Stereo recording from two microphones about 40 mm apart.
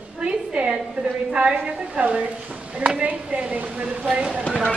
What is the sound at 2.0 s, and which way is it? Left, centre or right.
A woman's voice, right.